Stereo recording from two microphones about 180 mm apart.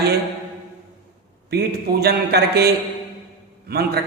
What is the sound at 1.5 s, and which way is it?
A man's voice, 65° right (ahead or behind).